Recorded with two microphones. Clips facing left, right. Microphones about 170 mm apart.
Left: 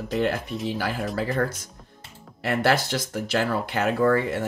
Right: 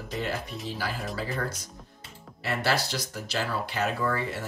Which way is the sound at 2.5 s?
50° left (ahead or behind).